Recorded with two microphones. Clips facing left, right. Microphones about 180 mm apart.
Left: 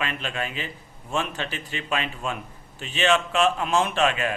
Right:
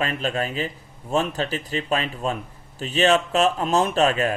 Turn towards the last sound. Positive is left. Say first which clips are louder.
# right 3 dB
turn(degrees=-40)  # may be behind; listen again after turning